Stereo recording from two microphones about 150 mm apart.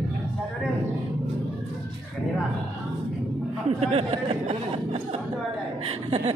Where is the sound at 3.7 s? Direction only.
40° right (ahead or behind).